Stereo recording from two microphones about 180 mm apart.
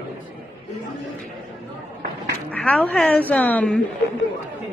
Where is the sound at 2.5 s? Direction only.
5° left (ahead or behind).